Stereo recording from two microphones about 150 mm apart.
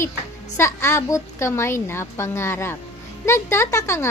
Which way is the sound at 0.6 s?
20° left (ahead or behind).